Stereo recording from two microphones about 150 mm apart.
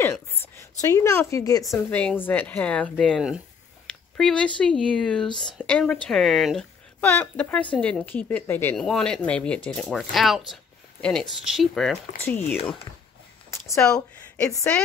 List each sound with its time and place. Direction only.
0.3 s a woman's voice: 15° left (ahead or behind)
1.9 s speech: 10° left (ahead or behind)
3.8 s a sound: 5° left (ahead or behind)
4.6 s speech: 5° left (ahead or behind)
10.5 s a sound: 5° left (ahead or behind)
11.4 s speech: centre (ahead or behind)
13.5 s a sound: 20° left (ahead or behind)
13.8 s a woman's voice: 5° left (ahead or behind)
14.4 s speech: 20° left (ahead or behind)